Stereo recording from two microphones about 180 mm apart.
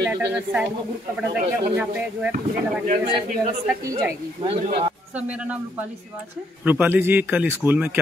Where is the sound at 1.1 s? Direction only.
5° right (ahead or behind).